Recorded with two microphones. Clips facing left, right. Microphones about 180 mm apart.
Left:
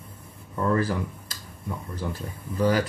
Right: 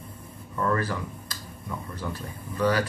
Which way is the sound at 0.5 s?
30° left (ahead or behind).